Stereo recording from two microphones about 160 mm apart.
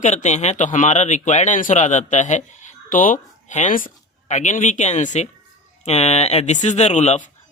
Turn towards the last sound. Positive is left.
turn(degrees=45)  # may be behind; listen again after turning